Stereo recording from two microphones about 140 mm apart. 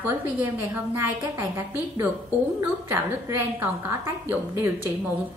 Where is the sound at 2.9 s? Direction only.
15° right (ahead or behind).